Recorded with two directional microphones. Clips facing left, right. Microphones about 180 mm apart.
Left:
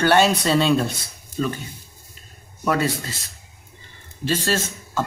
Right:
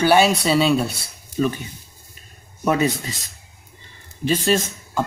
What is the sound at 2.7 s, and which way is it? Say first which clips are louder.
Speech: right 2 dB; 15° right (ahead or behind).